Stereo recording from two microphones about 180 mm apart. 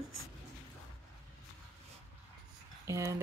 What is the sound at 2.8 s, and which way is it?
Speech, 15° right (ahead or behind).